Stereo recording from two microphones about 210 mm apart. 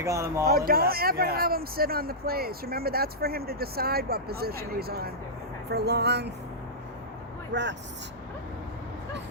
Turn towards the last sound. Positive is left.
turn(degrees=-55)  # may be behind; listen again after turning